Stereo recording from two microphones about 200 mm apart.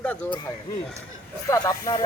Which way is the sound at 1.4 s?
15° left (ahead or behind).